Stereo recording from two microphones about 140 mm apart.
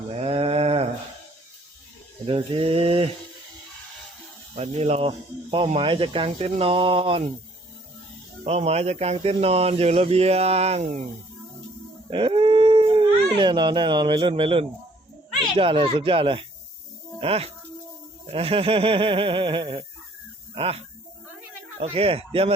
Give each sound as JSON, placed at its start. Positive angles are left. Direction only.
{"t": 0.2, "sound": "sheep", "side_deg": -45}
{"t": 2.2, "sound": "speech", "side_deg": -40}
{"t": 4.5, "sound": "speech", "side_deg": -50}
{"t": 8.4, "sound": "speech", "side_deg": -50}
{"t": 12.1, "sound": "speech", "side_deg": -40}